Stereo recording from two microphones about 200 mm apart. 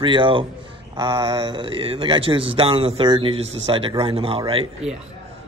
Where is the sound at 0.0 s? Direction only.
25° right (ahead or behind).